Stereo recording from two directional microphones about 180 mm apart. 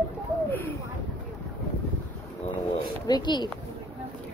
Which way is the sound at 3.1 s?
25° left (ahead or behind).